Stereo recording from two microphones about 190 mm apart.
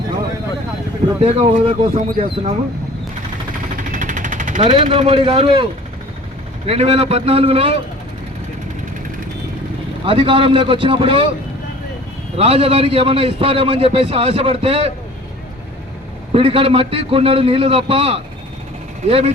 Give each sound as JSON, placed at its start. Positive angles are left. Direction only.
{"t": 1.2, "sound": "speech", "side_deg": -35}
{"t": 3.9, "sound": "machine gun", "side_deg": -45}
{"t": 4.7, "sound": "speech", "side_deg": -30}
{"t": 6.7, "sound": "a man's voice", "side_deg": -30}
{"t": 10.1, "sound": "a man's voice", "side_deg": -25}
{"t": 12.4, "sound": "a man's voice", "side_deg": -30}
{"t": 16.3, "sound": "a man's voice", "side_deg": -30}